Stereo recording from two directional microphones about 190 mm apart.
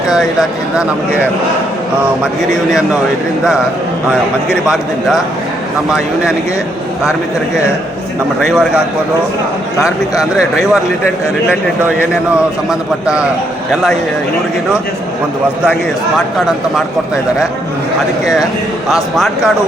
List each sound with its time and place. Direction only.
0.1 s speech: centre (ahead or behind)
2.6 s speech: 5° right (ahead or behind)
4.6 s speech: centre (ahead or behind)
8.4 s speech: centre (ahead or behind)
9.7 s speech: 15° left (ahead or behind)
13.1 s speech: 5° right (ahead or behind)